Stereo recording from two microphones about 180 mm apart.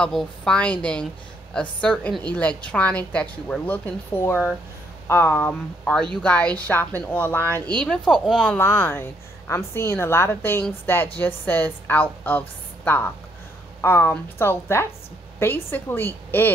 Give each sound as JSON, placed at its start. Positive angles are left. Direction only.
{"t": 0.0, "sound": "a woman's voice", "side_deg": 5}